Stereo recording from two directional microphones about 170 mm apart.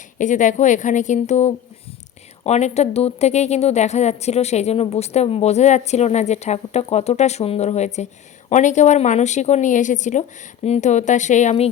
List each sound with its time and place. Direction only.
0.2 s a woman's voice: 45° left (ahead or behind)